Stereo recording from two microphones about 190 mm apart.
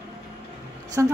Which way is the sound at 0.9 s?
15° right (ahead or behind).